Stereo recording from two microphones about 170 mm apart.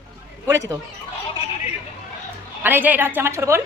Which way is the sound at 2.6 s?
10° right (ahead or behind).